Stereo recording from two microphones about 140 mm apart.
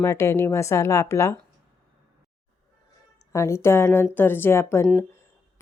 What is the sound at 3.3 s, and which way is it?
Speech, 20° left (ahead or behind).